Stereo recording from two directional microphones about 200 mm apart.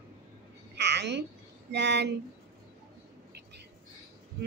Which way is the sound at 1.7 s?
60° right (ahead or behind).